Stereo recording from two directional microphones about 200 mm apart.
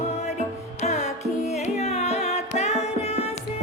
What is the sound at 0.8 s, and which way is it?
Music, 35° left (ahead or behind).